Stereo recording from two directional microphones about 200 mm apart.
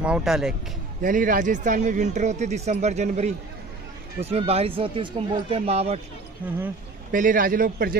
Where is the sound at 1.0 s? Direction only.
40° right (ahead or behind).